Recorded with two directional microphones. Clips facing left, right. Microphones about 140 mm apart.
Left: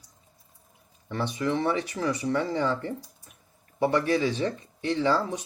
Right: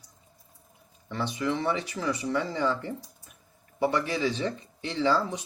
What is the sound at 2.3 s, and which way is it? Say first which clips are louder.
Speech: left 1 dB; 35° left (ahead or behind).